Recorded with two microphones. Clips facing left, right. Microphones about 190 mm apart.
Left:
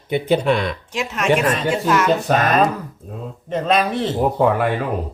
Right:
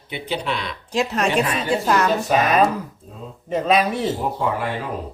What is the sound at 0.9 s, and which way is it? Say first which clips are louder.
Speech: even; 35° right (ahead or behind).